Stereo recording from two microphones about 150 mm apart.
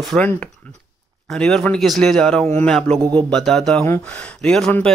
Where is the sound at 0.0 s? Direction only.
5° left (ahead or behind).